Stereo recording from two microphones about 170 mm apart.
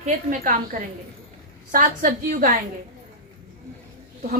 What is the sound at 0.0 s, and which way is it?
A woman's voice, 50° right (ahead or behind).